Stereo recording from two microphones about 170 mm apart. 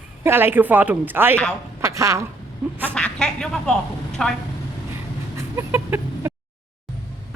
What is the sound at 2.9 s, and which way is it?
Speech, 5° left (ahead or behind).